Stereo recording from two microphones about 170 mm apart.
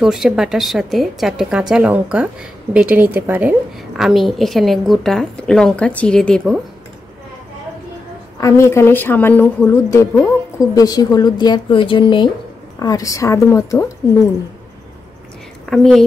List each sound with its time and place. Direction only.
0.0 s a woman's voice: centre (ahead or behind)
8.4 s a woman's voice: 15° left (ahead or behind)
15.6 s a woman's voice: centre (ahead or behind)